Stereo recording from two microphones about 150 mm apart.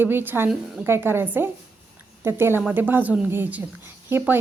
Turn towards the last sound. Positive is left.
turn(degrees=-15)  # may be behind; listen again after turning